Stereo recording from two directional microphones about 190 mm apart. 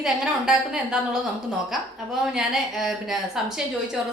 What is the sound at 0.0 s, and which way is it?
Speech, 5° right (ahead or behind).